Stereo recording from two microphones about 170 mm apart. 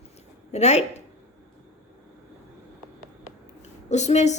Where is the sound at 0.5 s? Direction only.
40° left (ahead or behind).